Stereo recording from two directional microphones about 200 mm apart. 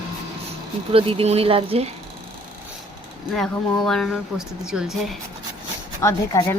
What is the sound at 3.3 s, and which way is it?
Speech, centre (ahead or behind).